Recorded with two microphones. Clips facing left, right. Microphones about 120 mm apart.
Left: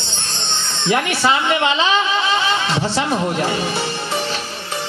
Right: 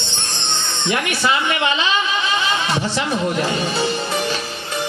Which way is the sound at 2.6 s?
15° right (ahead or behind).